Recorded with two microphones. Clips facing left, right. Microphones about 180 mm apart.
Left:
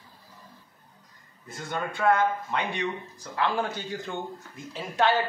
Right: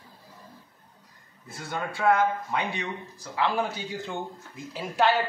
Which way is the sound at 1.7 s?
10° right (ahead or behind).